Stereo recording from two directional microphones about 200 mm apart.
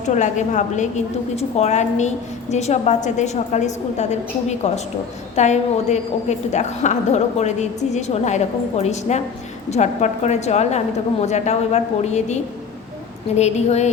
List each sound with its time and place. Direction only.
0.1 s a woman's voice: 35° left (ahead or behind)